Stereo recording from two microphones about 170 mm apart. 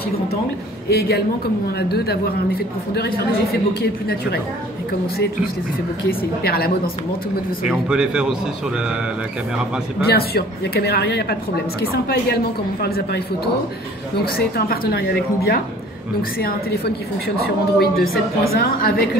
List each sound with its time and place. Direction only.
0.8 s speech: 70° left (ahead or behind)
6.0 s speech: 65° left (ahead or behind)
7.6 s speech: 5° right (ahead or behind)
10.0 s speech: 65° left (ahead or behind)